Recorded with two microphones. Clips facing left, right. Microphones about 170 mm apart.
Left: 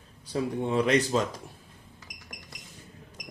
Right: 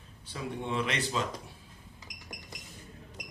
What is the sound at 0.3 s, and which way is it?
Speech, 40° left (ahead or behind).